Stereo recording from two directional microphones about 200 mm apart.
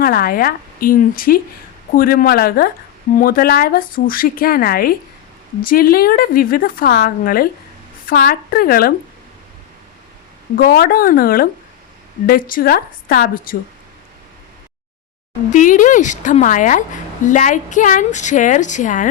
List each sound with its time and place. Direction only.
0.0 s speech: 50° left (ahead or behind)
10.6 s speech: 50° left (ahead or behind)
15.5 s a woman's voice: 40° left (ahead or behind)